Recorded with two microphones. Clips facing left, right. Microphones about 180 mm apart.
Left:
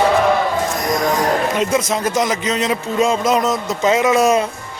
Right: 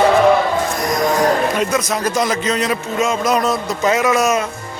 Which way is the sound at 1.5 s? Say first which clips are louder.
Left 1 dB; 25° left (ahead or behind).